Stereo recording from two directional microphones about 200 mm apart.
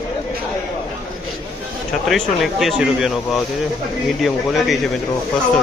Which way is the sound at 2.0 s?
Centre (ahead or behind).